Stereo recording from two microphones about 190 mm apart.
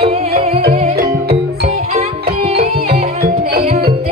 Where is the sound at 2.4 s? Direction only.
35° right (ahead or behind).